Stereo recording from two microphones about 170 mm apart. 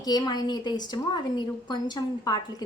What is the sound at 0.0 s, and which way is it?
A woman's voice, 25° left (ahead or behind).